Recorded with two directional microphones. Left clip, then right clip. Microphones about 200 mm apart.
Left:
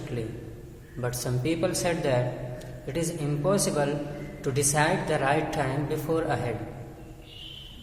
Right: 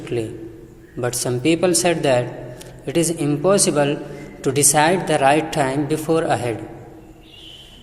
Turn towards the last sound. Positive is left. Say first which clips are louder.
# right 9 dB
turn(degrees=-30)  # may be behind; listen again after turning